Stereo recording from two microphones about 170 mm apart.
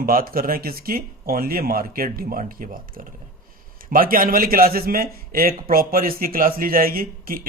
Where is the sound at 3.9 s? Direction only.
55° right (ahead or behind).